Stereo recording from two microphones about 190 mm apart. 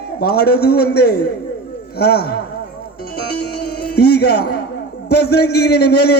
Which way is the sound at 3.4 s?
60° left (ahead or behind).